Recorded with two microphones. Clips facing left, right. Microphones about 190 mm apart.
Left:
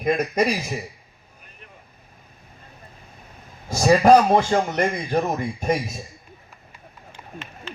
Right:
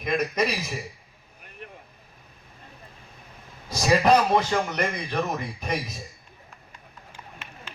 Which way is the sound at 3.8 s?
45° left (ahead or behind).